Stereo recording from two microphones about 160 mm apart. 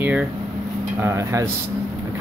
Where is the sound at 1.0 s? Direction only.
20° right (ahead or behind).